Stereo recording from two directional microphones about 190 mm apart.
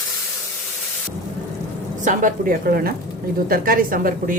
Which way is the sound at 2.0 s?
45° right (ahead or behind).